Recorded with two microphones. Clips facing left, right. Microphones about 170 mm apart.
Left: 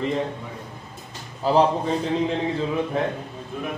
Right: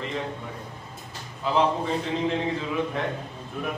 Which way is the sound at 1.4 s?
40° left (ahead or behind).